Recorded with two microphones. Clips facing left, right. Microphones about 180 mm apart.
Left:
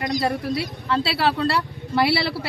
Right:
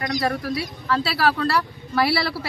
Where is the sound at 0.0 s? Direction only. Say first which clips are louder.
Left 1 dB; 25° left (ahead or behind).